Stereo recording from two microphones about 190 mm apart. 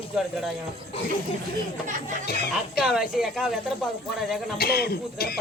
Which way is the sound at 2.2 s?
55° left (ahead or behind).